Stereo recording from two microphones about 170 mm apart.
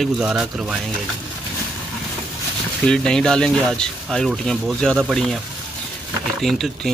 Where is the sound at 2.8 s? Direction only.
5° left (ahead or behind).